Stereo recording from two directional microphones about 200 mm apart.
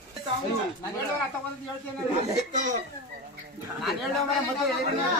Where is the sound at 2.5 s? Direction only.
40° right (ahead or behind).